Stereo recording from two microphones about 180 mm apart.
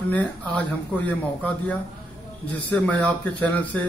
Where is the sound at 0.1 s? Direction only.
10° left (ahead or behind).